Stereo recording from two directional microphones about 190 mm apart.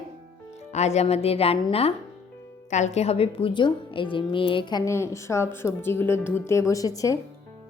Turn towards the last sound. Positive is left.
turn(degrees=20)  # may be behind; listen again after turning